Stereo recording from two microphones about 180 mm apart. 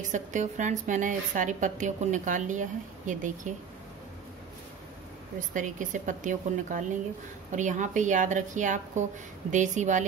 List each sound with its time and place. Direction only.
0.1 s a woman's voice: 45° right (ahead or behind)
5.5 s a woman's voice: 45° right (ahead or behind)